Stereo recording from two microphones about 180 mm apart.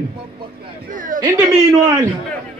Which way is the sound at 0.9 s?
50° right (ahead or behind).